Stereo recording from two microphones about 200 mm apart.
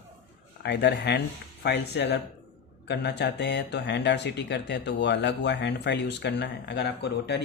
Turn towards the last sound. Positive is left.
turn(degrees=55)  # may be behind; listen again after turning